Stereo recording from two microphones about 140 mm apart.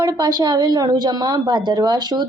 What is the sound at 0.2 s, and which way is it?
A woman's voice, 30° right (ahead or behind).